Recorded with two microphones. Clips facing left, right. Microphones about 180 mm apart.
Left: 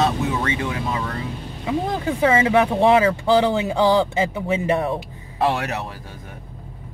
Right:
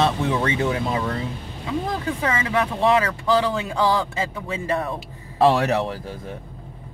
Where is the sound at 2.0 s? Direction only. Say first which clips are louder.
Left 7 dB; 25° left (ahead or behind).